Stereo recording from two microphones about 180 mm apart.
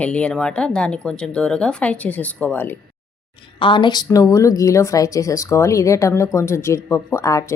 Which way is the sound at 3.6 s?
25° left (ahead or behind).